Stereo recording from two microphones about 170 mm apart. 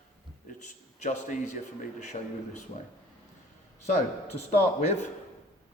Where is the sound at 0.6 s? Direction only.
45° left (ahead or behind).